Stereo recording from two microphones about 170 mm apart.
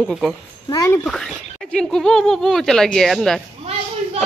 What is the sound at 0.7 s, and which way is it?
Speech, 20° left (ahead or behind).